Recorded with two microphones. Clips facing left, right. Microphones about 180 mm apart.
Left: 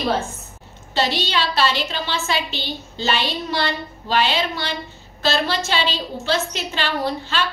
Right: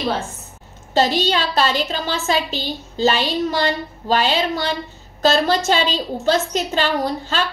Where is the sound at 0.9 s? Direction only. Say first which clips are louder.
Right 4 dB; 45° right (ahead or behind).